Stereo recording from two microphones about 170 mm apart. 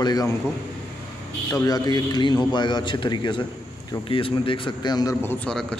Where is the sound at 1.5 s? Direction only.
20° left (ahead or behind).